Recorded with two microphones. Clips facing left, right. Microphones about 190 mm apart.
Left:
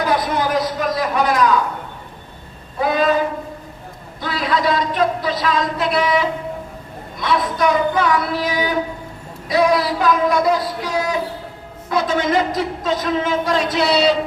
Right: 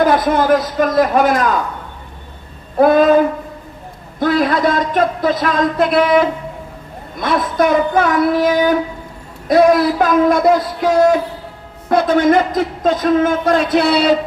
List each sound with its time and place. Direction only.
0.0 s a man's voice: 50° right (ahead or behind)
2.7 s a man's voice: 50° right (ahead or behind)
4.2 s a man's voice: 50° right (ahead or behind)